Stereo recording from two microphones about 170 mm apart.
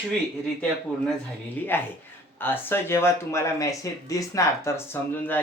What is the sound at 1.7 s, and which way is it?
Speech, 15° left (ahead or behind).